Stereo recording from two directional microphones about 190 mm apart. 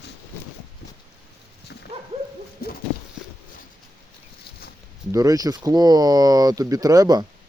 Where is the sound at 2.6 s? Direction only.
55° left (ahead or behind).